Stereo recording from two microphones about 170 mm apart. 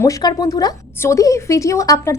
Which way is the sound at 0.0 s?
20° left (ahead or behind).